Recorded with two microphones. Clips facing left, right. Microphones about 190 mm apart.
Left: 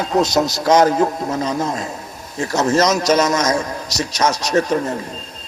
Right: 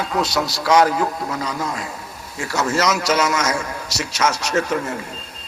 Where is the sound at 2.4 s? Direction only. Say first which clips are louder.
Left 4 dB; 40° left (ahead or behind).